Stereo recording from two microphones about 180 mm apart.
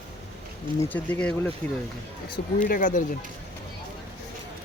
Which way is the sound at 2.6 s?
50° left (ahead or behind).